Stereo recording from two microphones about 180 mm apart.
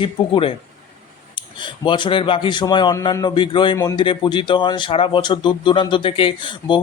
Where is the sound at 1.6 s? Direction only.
25° left (ahead or behind).